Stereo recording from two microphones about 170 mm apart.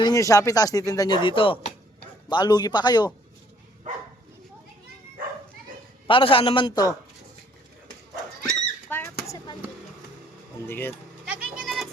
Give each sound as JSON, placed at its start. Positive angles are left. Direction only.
{"t": 0.0, "sound": "speech", "side_deg": 20}
{"t": 3.9, "sound": "dog", "side_deg": -50}
{"t": 6.1, "sound": "a man's voice", "side_deg": 30}
{"t": 8.9, "sound": "a sound", "side_deg": 15}
{"t": 10.7, "sound": "speech", "side_deg": 10}
{"t": 11.3, "sound": "a sound", "side_deg": -5}